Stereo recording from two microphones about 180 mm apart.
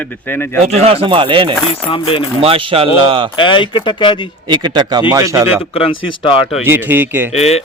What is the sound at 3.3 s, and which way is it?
Speech, 25° left (ahead or behind).